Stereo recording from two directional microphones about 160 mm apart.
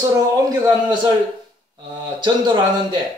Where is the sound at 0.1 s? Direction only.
20° right (ahead or behind).